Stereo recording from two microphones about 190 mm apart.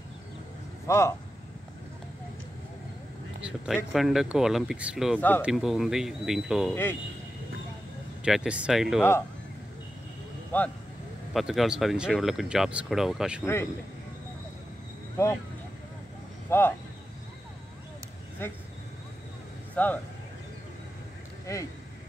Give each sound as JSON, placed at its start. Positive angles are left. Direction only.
{"t": 0.8, "sound": "speech", "side_deg": 15}
{"t": 3.3, "sound": "speech", "side_deg": -5}
{"t": 6.7, "sound": "speech", "side_deg": 10}
{"t": 8.2, "sound": "speech", "side_deg": -5}
{"t": 10.5, "sound": "speech", "side_deg": 10}
{"t": 16.4, "sound": "speech", "side_deg": 10}
{"t": 18.4, "sound": "speech", "side_deg": 10}
{"t": 19.7, "sound": "speech", "side_deg": 10}
{"t": 21.5, "sound": "speech", "side_deg": 15}